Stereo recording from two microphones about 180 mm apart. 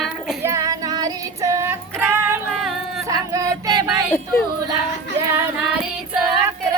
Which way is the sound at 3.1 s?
20° right (ahead or behind).